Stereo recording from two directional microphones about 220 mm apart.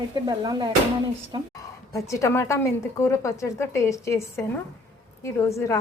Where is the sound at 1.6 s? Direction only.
15° left (ahead or behind).